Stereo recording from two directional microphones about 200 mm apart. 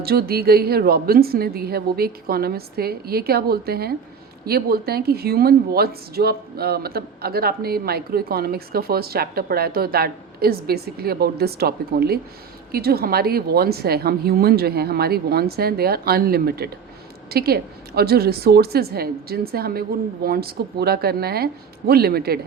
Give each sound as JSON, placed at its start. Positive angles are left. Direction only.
{"t": 0.0, "sound": "speech", "side_deg": -50}